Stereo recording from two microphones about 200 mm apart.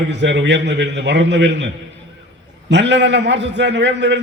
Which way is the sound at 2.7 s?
60° right (ahead or behind).